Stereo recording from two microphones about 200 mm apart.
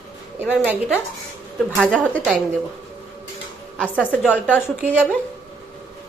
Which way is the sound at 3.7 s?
10° left (ahead or behind).